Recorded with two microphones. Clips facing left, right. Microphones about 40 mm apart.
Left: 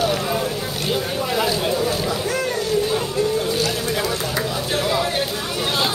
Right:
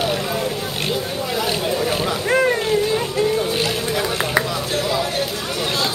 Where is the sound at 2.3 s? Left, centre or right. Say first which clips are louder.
Right 6 dB; right.